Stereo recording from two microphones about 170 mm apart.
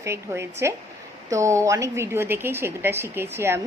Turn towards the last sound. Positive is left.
turn(degrees=-15)  # may be behind; listen again after turning